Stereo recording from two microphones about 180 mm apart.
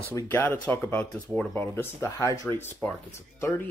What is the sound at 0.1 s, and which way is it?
Speech, 15° left (ahead or behind).